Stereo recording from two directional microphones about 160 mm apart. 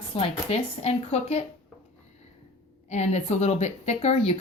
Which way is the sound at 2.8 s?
45° left (ahead or behind).